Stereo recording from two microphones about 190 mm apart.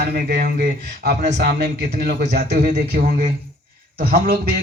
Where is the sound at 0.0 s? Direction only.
55° right (ahead or behind).